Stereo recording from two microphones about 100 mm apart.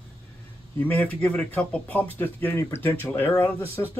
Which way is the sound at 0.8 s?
20° left (ahead or behind).